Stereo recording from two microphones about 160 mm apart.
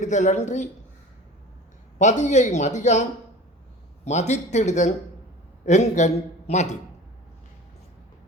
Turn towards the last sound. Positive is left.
turn(degrees=45)  # may be behind; listen again after turning